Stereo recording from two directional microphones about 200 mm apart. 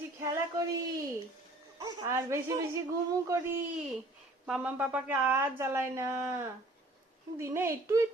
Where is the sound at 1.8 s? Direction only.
15° right (ahead or behind).